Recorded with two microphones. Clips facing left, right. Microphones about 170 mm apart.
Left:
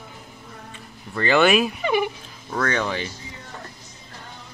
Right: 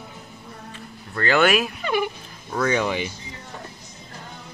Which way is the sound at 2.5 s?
10° right (ahead or behind).